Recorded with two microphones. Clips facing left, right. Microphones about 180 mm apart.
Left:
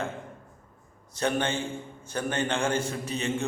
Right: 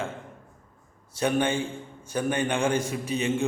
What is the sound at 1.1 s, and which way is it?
A man's voice, 10° right (ahead or behind).